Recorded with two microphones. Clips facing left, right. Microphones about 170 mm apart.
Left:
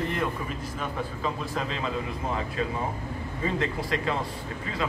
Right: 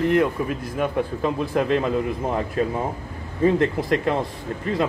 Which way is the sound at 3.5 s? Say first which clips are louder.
Right 9 dB; 55° right (ahead or behind).